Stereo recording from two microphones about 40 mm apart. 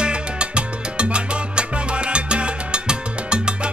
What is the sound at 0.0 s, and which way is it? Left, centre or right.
Salsa music, right.